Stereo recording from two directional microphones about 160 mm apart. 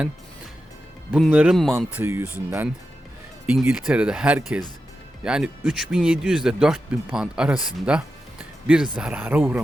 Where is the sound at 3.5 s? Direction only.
5° right (ahead or behind).